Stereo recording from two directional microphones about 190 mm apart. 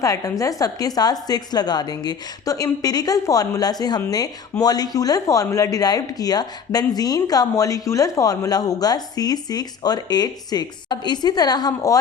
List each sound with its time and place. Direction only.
0.0 s speech: 15° left (ahead or behind)